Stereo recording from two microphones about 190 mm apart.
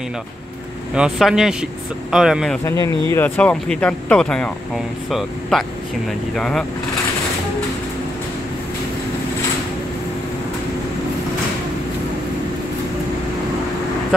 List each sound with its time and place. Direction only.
0.9 s speech: 5° right (ahead or behind)
2.6 s speech: 15° left (ahead or behind)